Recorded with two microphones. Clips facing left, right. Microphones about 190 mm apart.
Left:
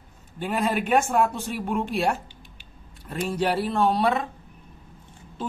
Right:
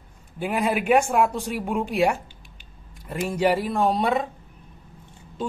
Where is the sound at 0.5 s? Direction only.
10° right (ahead or behind).